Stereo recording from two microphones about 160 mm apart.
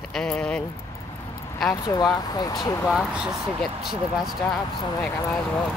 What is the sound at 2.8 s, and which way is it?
Speech, 5° right (ahead or behind).